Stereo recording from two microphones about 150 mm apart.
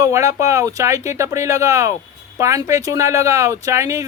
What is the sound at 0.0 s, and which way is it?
Speech, 20° right (ahead or behind).